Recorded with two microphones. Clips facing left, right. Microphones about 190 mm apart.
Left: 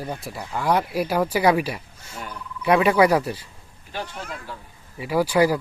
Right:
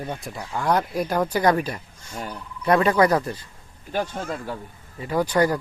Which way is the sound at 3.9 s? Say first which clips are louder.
Right 6 dB; 45° right (ahead or behind).